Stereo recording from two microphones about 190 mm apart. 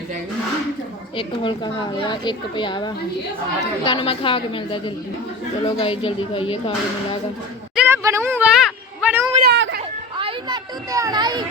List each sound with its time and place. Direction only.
1.1 s a woman's voice: 25° left (ahead or behind)
7.8 s speech: 15° right (ahead or behind)
8.6 s children playing: 5° right (ahead or behind)
9.4 s speech: 60° right (ahead or behind)
10.2 s speech: 25° right (ahead or behind)